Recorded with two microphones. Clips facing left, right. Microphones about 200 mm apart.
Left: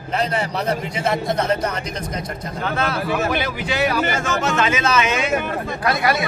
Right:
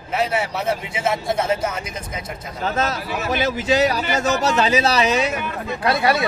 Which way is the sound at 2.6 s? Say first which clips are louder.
Even; 40° right (ahead or behind).